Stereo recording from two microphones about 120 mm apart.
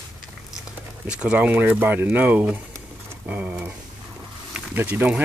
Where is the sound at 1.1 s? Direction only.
10° right (ahead or behind).